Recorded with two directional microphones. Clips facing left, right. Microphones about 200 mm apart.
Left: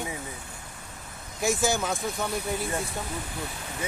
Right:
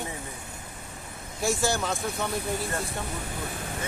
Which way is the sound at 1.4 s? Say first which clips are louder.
Left 1 dB; centre (ahead or behind).